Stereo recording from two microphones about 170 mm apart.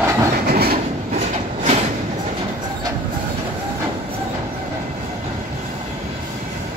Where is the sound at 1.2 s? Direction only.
40° right (ahead or behind).